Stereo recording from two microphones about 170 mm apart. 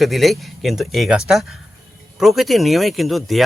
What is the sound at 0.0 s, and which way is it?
Speech, centre (ahead or behind).